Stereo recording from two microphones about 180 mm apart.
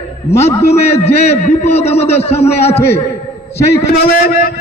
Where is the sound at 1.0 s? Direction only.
35° left (ahead or behind).